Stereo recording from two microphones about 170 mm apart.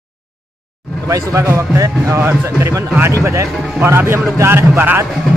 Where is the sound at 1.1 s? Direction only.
15° right (ahead or behind).